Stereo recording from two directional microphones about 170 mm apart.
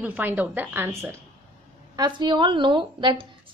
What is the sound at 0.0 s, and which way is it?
A woman's voice, 10° right (ahead or behind).